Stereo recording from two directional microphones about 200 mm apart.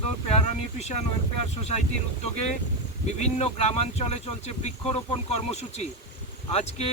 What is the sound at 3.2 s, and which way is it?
Speech, 35° left (ahead or behind).